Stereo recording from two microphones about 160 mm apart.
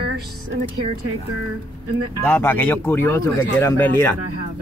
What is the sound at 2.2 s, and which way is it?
Speech, 10° left (ahead or behind).